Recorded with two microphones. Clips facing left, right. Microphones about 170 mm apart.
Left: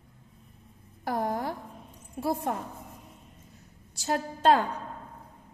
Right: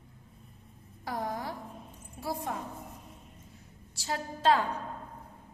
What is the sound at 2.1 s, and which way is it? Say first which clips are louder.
Speech: left 6 dB; 55° left (ahead or behind).